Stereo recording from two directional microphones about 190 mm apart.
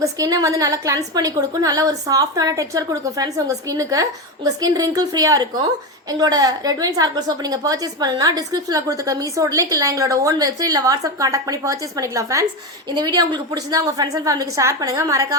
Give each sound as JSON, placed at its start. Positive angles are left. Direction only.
{"t": 0.0, "sound": "a woman's voice", "side_deg": -20}